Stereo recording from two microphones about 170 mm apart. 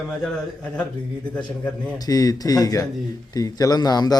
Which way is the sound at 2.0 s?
20° left (ahead or behind).